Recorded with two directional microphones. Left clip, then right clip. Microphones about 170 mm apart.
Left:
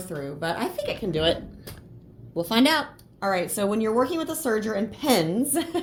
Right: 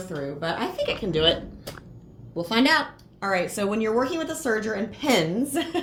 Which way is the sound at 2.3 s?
45° left (ahead or behind).